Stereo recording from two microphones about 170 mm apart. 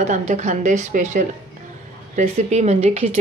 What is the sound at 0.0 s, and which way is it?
A woman's voice, 45° right (ahead or behind).